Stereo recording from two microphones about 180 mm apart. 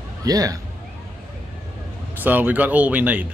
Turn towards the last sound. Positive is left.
turn(degrees=-10)  # may be behind; listen again after turning